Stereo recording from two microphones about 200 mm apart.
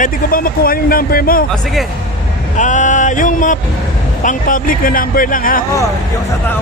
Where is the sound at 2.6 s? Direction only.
40° left (ahead or behind).